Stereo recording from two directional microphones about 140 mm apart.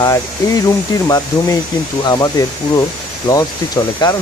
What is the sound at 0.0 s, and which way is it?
Speech, 25° left (ahead or behind).